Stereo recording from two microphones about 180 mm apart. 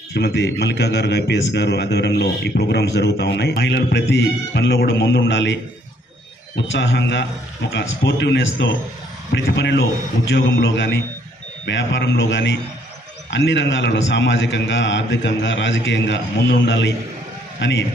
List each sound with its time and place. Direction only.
0.1 s a man's voice: 75° left (ahead or behind)